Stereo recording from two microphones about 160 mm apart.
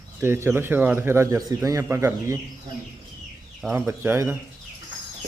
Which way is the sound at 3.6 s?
10° right (ahead or behind).